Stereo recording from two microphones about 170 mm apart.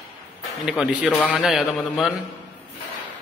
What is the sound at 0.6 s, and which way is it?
A man's voice, centre (ahead or behind).